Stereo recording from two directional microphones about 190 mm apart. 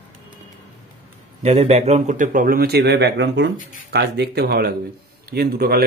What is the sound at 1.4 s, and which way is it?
A man's voice, 35° right (ahead or behind).